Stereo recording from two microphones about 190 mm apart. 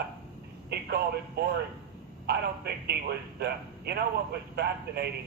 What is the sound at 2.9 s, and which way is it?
A man's voice, 60° right (ahead or behind).